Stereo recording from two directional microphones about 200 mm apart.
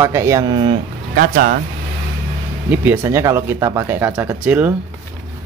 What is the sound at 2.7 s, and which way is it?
Speech, 10° right (ahead or behind).